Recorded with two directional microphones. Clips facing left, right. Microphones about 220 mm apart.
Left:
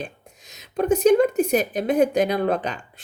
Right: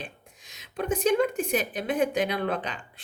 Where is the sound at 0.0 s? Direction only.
40° left (ahead or behind).